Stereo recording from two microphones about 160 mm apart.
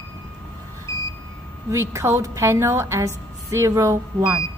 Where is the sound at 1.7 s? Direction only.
15° right (ahead or behind).